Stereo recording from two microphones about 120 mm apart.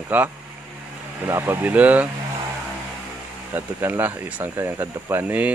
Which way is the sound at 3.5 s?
15° right (ahead or behind).